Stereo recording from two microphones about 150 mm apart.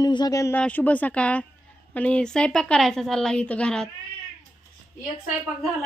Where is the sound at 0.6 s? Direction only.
10° left (ahead or behind).